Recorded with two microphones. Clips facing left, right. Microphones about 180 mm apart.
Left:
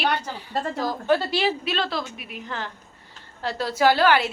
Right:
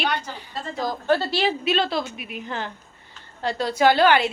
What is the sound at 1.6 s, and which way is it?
A woman's voice, 25° right (ahead or behind).